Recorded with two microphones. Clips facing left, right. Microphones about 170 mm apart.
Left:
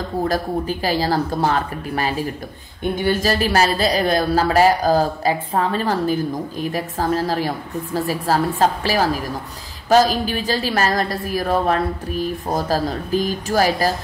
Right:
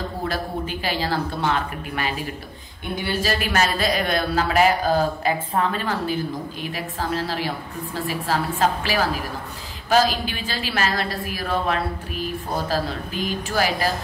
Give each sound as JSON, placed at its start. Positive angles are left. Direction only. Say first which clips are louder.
{"t": 0.3, "sound": "speech", "louder": "left 5 dB", "side_deg": 40}